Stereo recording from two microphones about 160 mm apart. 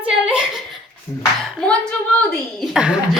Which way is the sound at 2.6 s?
5° right (ahead or behind).